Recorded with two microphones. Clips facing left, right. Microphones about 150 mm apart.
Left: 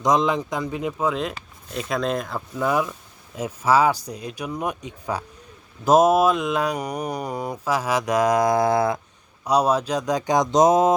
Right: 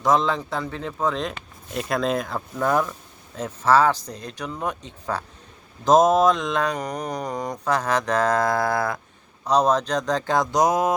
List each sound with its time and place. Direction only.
0.0 s mantra: 15° left (ahead or behind)